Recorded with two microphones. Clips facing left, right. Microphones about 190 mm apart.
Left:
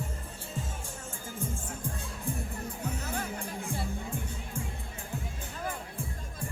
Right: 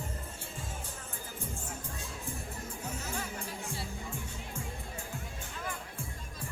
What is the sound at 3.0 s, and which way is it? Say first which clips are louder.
Music: left 3 dB; 55° left (ahead or behind).